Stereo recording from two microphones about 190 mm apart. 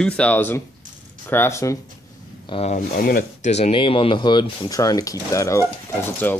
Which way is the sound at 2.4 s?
30° left (ahead or behind).